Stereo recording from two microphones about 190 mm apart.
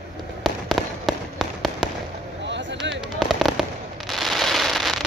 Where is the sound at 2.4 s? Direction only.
70° right (ahead or behind).